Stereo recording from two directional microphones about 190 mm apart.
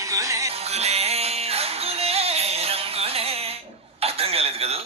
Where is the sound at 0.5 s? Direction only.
35° right (ahead or behind).